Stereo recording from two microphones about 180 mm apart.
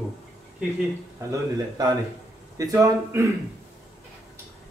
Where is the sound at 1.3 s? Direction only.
20° right (ahead or behind).